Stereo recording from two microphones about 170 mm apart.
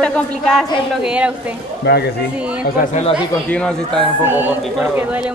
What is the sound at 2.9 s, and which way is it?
Speech, 40° left (ahead or behind).